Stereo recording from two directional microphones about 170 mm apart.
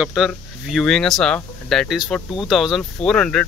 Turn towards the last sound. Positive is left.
turn(degrees=5)  # may be behind; listen again after turning